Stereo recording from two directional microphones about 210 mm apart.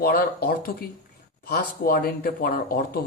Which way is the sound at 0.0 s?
45° left (ahead or behind).